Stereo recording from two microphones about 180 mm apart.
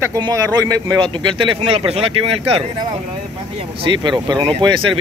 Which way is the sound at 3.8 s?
25° right (ahead or behind).